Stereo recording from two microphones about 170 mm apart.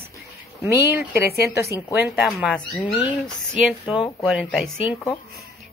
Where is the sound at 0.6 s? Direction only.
15° right (ahead or behind).